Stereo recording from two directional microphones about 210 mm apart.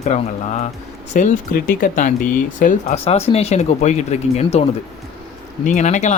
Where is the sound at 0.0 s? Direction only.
30° left (ahead or behind).